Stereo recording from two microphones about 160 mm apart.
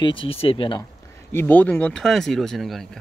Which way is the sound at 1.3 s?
10° left (ahead or behind).